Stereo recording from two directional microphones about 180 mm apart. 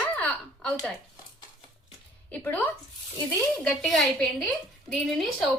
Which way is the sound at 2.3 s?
10° left (ahead or behind).